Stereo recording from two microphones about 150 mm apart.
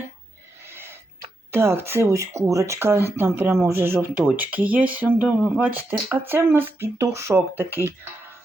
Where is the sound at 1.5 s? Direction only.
15° right (ahead or behind).